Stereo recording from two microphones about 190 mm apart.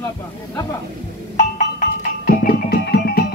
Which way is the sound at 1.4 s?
40° left (ahead or behind).